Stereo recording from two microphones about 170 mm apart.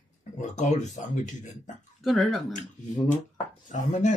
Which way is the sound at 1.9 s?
Centre (ahead or behind).